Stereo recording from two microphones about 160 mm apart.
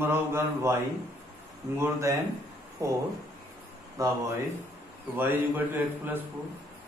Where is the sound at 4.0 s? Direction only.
20° right (ahead or behind).